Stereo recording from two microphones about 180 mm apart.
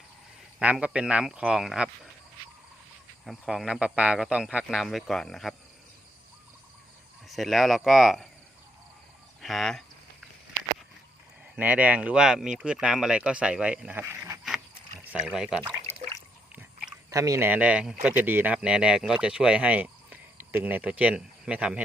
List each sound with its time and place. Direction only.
0.6 s speech: 5° right (ahead or behind)
3.2 s speech: centre (ahead or behind)
7.3 s speech: centre (ahead or behind)
9.4 s speech: centre (ahead or behind)
11.5 s speech: 10° right (ahead or behind)
15.6 s speech: 25° right (ahead or behind)
17.1 s speech: 15° right (ahead or behind)